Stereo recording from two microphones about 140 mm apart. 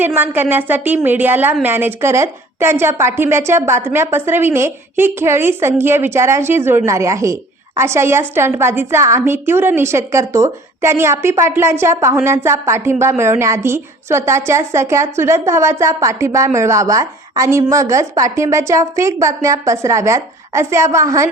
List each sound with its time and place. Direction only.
0.0 s a woman's voice: 15° right (ahead or behind)